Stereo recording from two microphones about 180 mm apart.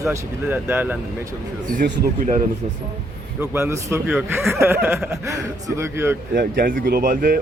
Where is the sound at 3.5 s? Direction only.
15° right (ahead or behind).